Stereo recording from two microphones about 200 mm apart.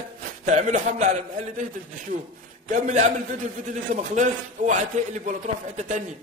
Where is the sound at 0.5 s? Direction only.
35° right (ahead or behind).